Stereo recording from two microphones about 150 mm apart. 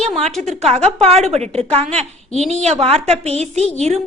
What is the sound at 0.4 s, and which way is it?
A woman's voice, 45° right (ahead or behind).